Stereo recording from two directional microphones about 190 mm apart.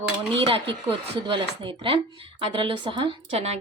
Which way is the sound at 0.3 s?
30° right (ahead or behind).